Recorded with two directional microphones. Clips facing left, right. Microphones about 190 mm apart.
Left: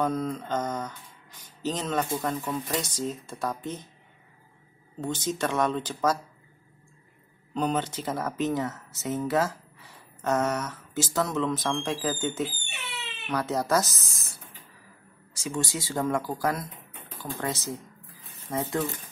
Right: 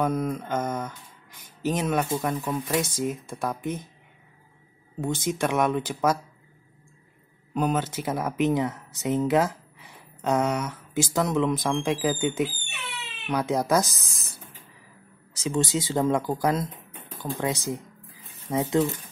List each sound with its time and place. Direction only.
0.0 s speech: 10° right (ahead or behind)
5.0 s speech: 10° right (ahead or behind)
7.5 s speech: 5° right (ahead or behind)
15.3 s speech: 20° right (ahead or behind)